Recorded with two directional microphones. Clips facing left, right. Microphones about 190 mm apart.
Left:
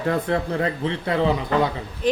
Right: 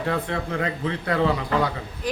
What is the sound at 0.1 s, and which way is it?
A man's voice, 35° left (ahead or behind).